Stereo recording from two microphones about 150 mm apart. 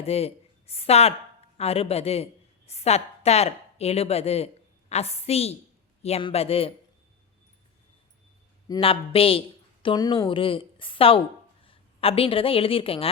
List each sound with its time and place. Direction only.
0.0 s a woman's voice: 40° left (ahead or behind)
8.8 s a woman's voice: 40° left (ahead or behind)